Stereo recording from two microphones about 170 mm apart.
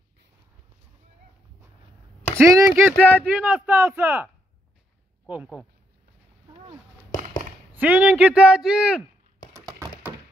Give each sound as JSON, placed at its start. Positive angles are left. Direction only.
{"t": 2.3, "sound": "speech", "side_deg": -15}
{"t": 3.0, "sound": "speech", "side_deg": 10}
{"t": 3.3, "sound": "speech", "side_deg": -10}
{"t": 7.7, "sound": "speech", "side_deg": -10}
{"t": 9.5, "sound": "a sound", "side_deg": -15}